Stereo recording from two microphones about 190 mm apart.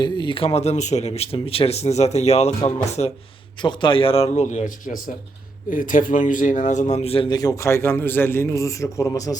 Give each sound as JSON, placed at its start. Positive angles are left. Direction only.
{"t": 0.0, "sound": "speech", "side_deg": 25}
{"t": 3.6, "sound": "speech", "side_deg": 25}